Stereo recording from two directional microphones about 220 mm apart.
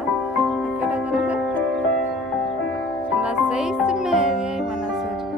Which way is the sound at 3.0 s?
5° right (ahead or behind).